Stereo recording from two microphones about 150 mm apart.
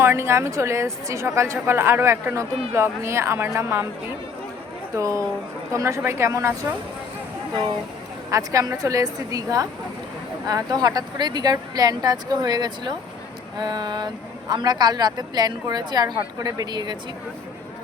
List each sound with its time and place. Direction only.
0.0 s speech: 15° right (ahead or behind)
4.9 s speech: 20° right (ahead or behind)
8.3 s speech: 20° right (ahead or behind)